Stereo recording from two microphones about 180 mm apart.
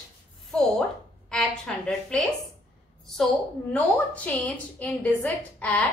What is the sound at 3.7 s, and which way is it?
A woman's voice, 10° left (ahead or behind).